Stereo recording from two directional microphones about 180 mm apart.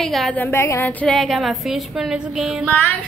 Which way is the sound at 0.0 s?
Centre (ahead or behind).